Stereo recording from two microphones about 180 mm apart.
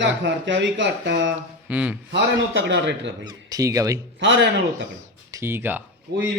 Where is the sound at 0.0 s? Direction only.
80° right.